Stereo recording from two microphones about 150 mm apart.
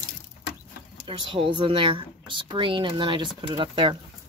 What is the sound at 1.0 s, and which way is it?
Speech, 35° right (ahead or behind).